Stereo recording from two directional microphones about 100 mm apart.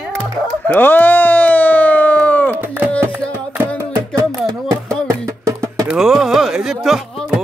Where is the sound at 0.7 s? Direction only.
20° left (ahead or behind).